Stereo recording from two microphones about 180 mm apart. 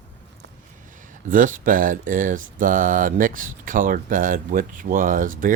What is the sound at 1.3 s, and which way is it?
Speech, 50° right (ahead or behind).